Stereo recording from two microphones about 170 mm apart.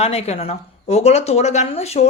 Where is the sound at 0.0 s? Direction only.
35° left (ahead or behind).